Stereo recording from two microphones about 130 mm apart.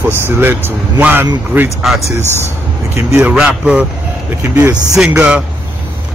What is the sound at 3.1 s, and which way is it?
Speech, 10° right (ahead or behind).